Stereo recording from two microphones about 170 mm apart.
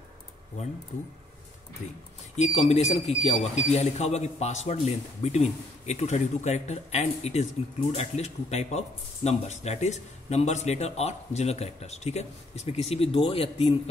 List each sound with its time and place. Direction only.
2.3 s speech: 40° left (ahead or behind)